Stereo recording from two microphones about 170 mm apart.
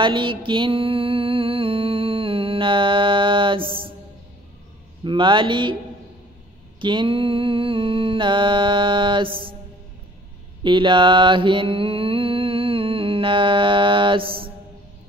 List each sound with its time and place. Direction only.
0.0 s mantra: 30° right (ahead or behind)
5.0 s speech: 30° right (ahead or behind)
6.8 s mantra: 30° right (ahead or behind)
10.6 s mantra: 30° right (ahead or behind)